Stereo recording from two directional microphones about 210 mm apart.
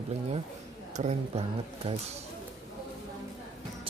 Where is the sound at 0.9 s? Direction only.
35° right (ahead or behind).